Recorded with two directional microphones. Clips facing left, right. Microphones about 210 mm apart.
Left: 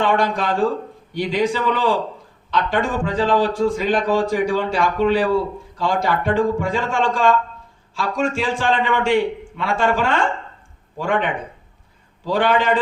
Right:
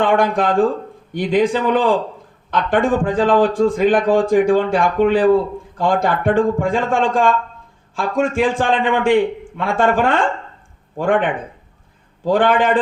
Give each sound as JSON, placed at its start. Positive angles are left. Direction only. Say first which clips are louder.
{"t": 0.0, "sound": "a man's voice", "louder": "right 4 dB", "side_deg": -55}